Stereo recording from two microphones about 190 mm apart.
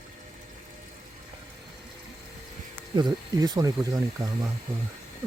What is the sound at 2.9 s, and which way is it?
Speech, 20° right (ahead or behind).